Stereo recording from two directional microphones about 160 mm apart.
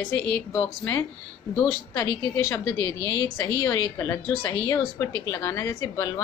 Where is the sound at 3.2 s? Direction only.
20° left (ahead or behind).